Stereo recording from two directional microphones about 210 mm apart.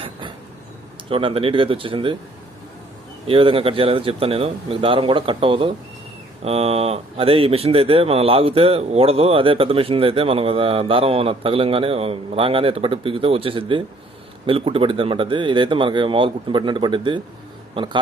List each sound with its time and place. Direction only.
1.1 s speech: 25° right (ahead or behind)
3.3 s speech: 25° right (ahead or behind)